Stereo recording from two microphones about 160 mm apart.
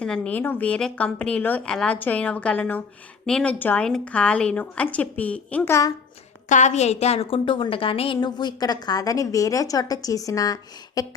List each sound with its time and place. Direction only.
0.0 s a woman's voice: 10° left (ahead or behind)
6.5 s a woman's voice: 50° left (ahead or behind); by 11.0 s 25° left (ahead or behind)